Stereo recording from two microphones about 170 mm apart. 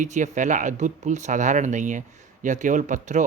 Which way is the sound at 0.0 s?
45° right (ahead or behind).